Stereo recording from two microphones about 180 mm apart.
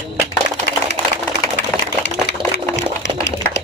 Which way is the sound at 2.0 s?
75° left (ahead or behind).